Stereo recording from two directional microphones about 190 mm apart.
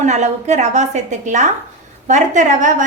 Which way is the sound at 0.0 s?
40° right (ahead or behind).